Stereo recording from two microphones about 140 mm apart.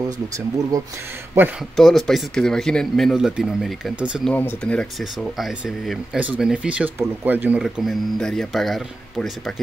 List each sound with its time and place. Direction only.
0.6 s speech: 25° right (ahead or behind)
1.8 s speech: centre (ahead or behind)
4.2 s speech: 10° left (ahead or behind)
5.2 s speech: centre (ahead or behind)